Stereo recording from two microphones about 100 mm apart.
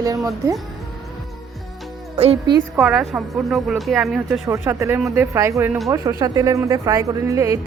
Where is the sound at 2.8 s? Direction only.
5° right (ahead or behind).